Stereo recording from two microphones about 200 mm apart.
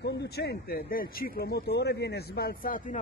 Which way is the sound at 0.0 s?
55° left (ahead or behind).